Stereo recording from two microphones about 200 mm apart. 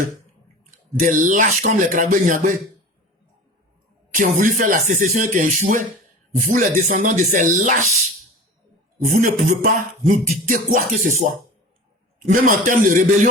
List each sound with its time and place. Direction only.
0.9 s speech: 40° right (ahead or behind)
4.1 s speech: 40° right (ahead or behind)
9.0 s speech: 40° right (ahead or behind)
12.3 s speech: 40° right (ahead or behind)